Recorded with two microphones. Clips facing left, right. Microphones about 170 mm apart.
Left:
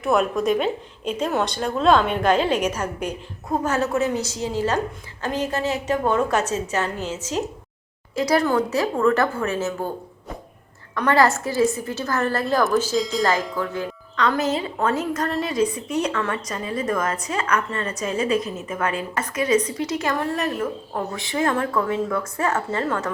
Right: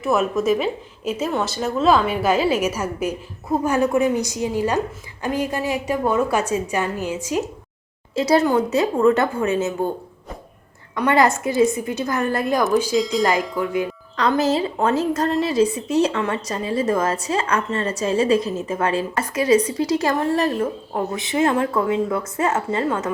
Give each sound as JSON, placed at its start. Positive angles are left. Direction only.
{"t": 0.0, "sound": "a woman's voice", "side_deg": 0}
{"t": 8.1, "sound": "a woman's voice", "side_deg": -25}
{"t": 10.9, "sound": "a woman's voice", "side_deg": -15}
{"t": 13.0, "sound": "a woman's voice", "side_deg": 0}
{"t": 13.6, "sound": "a woman's voice", "side_deg": -15}
{"t": 14.2, "sound": "a woman's voice", "side_deg": -30}
{"t": 20.9, "sound": "a woman's voice", "side_deg": -20}